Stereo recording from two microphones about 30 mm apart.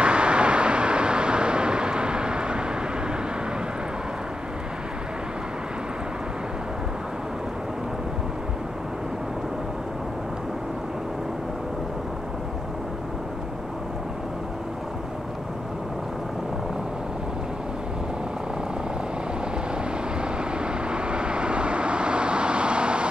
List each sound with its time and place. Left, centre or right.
0.0 s vehicle: right
20.2 s vehicle: right